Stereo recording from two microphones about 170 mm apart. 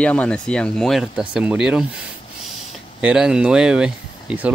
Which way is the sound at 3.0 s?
5° right (ahead or behind).